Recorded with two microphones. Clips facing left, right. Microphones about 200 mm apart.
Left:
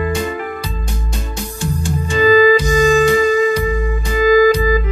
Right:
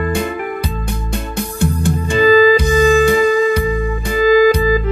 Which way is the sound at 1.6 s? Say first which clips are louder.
Right 4 dB; 60° right (ahead or behind).